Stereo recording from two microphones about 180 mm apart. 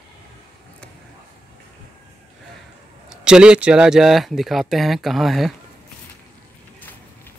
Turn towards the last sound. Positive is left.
turn(degrees=0)  # may be behind; listen again after turning